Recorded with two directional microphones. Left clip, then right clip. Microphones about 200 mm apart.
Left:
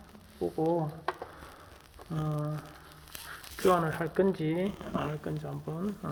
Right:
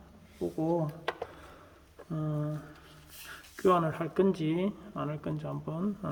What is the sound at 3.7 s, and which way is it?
Speech, 20° right (ahead or behind).